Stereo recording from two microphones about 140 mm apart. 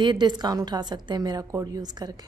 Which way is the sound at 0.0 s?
30° right (ahead or behind).